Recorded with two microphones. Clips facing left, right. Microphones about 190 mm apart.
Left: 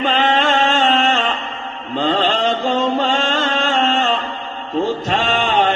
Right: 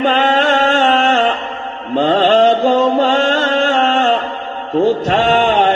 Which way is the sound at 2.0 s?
45° right (ahead or behind).